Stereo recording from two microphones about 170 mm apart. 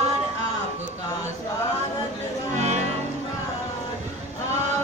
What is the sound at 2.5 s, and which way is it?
Music, 40° right (ahead or behind).